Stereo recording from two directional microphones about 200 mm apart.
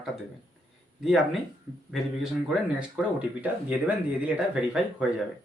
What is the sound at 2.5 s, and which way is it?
Speech, 5° right (ahead or behind).